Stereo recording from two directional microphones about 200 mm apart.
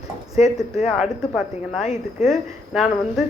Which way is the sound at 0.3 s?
35° left (ahead or behind).